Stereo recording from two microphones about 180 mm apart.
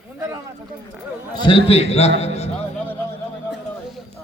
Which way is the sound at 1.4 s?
30° left (ahead or behind).